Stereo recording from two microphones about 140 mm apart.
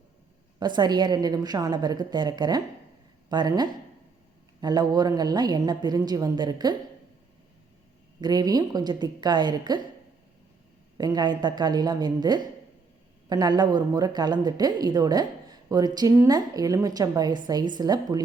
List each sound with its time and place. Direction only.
0.6 s a woman's voice: 30° right (ahead or behind)
8.2 s a woman's voice: 30° right (ahead or behind)
10.9 s a woman's voice: 30° right (ahead or behind)